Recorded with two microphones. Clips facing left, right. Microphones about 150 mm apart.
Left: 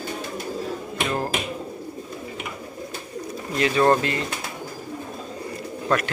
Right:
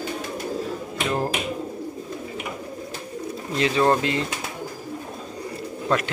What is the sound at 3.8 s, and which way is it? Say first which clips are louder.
Speech: left 2 dB; 5° right (ahead or behind).